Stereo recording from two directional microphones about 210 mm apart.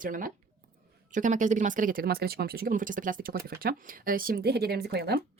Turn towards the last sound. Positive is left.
turn(degrees=-50)  # may be behind; listen again after turning